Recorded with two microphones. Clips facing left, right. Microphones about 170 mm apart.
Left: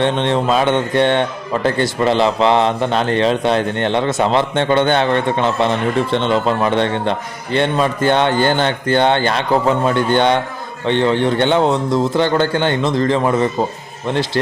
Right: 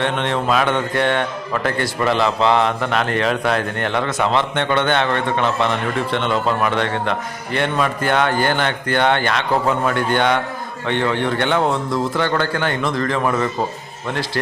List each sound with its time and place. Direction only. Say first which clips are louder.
0.0 s a man's voice: left 4 dB; 30° left (ahead or behind)